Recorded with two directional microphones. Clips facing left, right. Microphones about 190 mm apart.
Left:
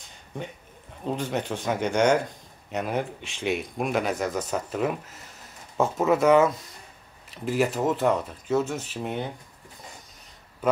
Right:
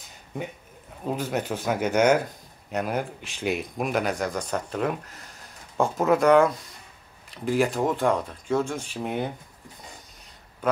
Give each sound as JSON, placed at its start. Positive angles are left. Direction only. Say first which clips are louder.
{"t": 1.0, "sound": "speech", "louder": "right 1 dB", "side_deg": -5}